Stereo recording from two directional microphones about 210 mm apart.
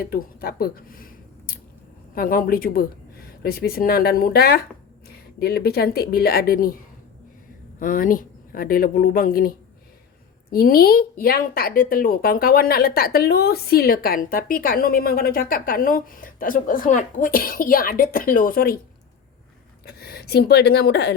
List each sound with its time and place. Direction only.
0.0 s a woman's voice: 45° left (ahead or behind)
7.8 s a woman's voice: 40° left (ahead or behind)
19.8 s a woman's voice: 50° left (ahead or behind)